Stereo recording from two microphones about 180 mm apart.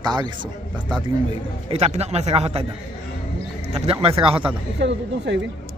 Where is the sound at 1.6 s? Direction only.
35° right (ahead or behind).